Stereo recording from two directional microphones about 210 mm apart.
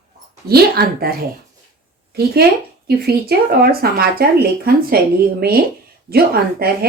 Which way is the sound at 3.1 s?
45° right (ahead or behind).